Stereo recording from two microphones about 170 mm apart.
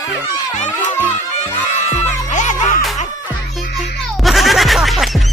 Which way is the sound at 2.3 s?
45° left (ahead or behind).